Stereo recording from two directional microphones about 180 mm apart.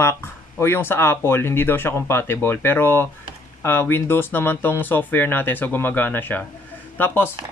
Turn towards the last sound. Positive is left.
turn(degrees=10)  # may be behind; listen again after turning